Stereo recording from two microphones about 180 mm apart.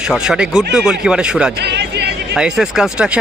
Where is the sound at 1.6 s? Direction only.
70° right (ahead or behind).